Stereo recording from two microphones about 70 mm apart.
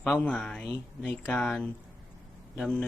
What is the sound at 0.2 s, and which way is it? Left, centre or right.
Speech, centre.